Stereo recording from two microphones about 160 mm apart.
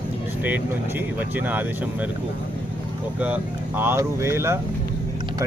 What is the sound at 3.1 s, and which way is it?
Speech, 10° right (ahead or behind).